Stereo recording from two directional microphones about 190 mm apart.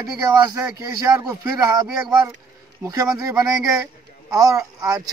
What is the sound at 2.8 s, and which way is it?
Speech, 20° right (ahead or behind).